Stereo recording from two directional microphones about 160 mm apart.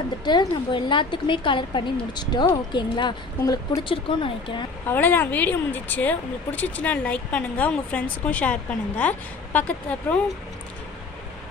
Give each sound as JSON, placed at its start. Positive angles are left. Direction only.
{"t": 0.2, "sound": "a woman's voice", "side_deg": 25}
{"t": 4.8, "sound": "speech", "side_deg": 10}